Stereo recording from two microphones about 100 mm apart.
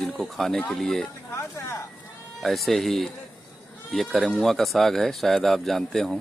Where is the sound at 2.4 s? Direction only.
Centre (ahead or behind).